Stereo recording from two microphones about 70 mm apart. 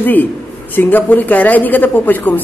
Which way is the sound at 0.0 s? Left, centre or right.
Left.